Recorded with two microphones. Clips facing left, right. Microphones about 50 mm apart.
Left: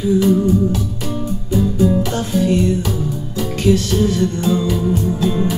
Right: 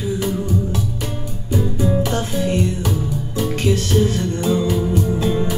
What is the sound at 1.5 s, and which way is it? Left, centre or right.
Music, right.